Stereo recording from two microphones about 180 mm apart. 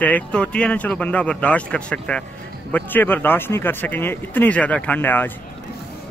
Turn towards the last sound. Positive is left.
turn(degrees=10)  # may be behind; listen again after turning